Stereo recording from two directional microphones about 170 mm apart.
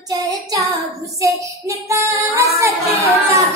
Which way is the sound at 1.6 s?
15° right (ahead or behind).